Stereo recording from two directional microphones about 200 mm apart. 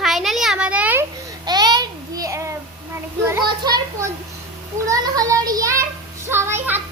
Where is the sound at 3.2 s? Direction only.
15° right (ahead or behind).